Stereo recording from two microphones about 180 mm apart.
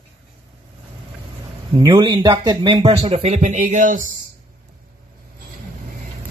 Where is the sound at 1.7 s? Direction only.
25° right (ahead or behind); by 4.1 s 45° right (ahead or behind).